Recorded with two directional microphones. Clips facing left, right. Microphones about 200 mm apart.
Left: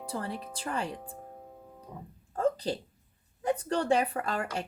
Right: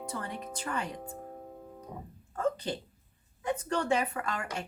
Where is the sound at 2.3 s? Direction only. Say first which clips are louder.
Left 3 dB; 35° left (ahead or behind).